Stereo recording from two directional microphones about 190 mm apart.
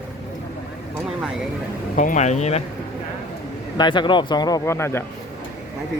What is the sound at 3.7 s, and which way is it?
Speech, 25° left (ahead or behind).